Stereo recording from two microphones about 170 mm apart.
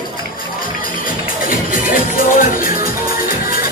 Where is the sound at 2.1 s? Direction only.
55° left (ahead or behind).